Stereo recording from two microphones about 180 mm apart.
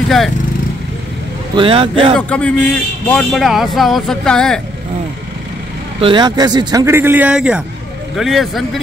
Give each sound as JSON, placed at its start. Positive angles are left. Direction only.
{"t": 1.5, "sound": "a man's voice", "side_deg": -30}
{"t": 2.1, "sound": "a man's voice", "side_deg": 5}
{"t": 5.9, "sound": "a man's voice", "side_deg": -25}